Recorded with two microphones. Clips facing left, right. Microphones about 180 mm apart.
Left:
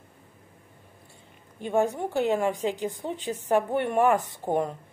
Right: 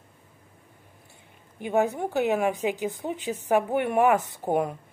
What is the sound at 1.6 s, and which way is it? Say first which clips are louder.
A woman's voice: right 1 dB; 5° right (ahead or behind).